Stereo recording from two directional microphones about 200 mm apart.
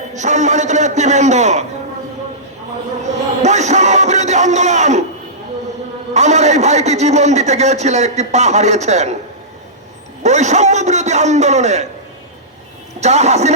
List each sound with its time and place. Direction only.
0.1 s a man's voice: 35° right (ahead or behind)
3.4 s a sound: 35° right (ahead or behind)
6.1 s a man's voice: 35° right (ahead or behind)
10.2 s a man's voice: 35° right (ahead or behind)
13.0 s a man's voice: 35° right (ahead or behind)